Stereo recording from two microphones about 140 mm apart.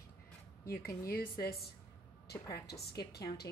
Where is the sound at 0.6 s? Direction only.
90° left.